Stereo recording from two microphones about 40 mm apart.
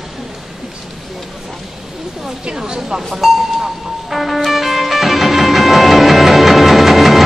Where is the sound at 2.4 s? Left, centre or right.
Right; by 3.6 s centre.